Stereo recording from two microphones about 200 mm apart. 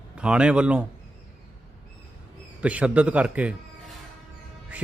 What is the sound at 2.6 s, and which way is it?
Speech, 5° right (ahead or behind).